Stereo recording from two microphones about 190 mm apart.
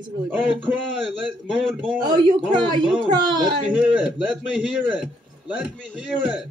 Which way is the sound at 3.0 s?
20° right (ahead or behind).